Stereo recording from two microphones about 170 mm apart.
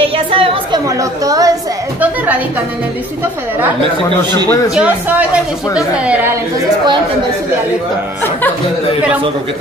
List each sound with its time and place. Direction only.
0.0 s a sound: 30° right (ahead or behind)
0.8 s a woman's voice: 20° right (ahead or behind)
2.0 s a woman's voice: 10° right (ahead or behind)
4.7 s a woman's voice: 5° right (ahead or behind)